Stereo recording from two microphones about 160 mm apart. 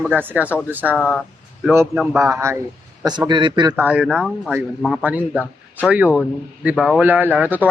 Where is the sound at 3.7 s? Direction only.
10° right (ahead or behind).